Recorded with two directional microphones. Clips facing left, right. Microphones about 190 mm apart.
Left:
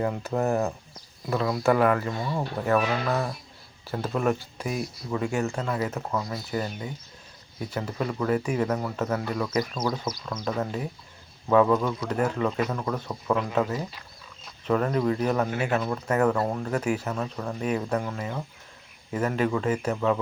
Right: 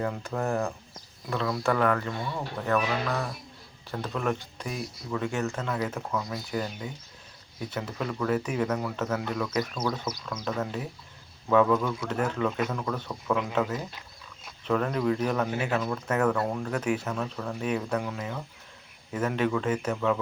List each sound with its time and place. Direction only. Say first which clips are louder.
0.0 s speech: left 3 dB; 5° left (ahead or behind)
0.3 s speech: left 4 dB; 20° left (ahead or behind)
1.3 s speech: left 4 dB; 5° left (ahead or behind)